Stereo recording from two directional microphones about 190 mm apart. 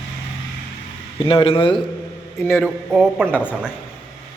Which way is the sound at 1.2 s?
30° left (ahead or behind).